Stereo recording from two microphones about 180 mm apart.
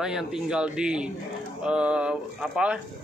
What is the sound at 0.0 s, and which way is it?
A man's voice, 5° right (ahead or behind).